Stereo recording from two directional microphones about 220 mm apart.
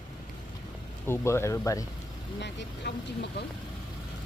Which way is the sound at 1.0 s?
10° left (ahead or behind).